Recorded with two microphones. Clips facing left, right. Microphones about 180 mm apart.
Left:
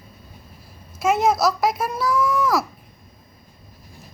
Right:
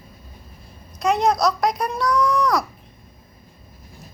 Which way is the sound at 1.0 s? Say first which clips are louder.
Even; 5° left (ahead or behind).